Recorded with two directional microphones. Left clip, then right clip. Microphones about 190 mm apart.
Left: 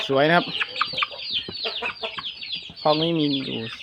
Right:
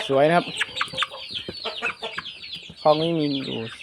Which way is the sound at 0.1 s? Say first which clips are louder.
Even; 10° left (ahead or behind).